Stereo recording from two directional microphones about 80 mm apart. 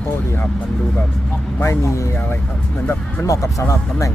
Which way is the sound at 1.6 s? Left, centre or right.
Left.